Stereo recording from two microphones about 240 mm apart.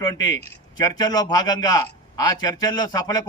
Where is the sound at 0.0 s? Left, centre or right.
Centre.